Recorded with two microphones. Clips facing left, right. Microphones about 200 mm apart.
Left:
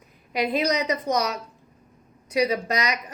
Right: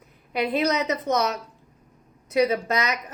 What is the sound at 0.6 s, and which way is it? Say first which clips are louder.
Speech: even; 15° left (ahead or behind).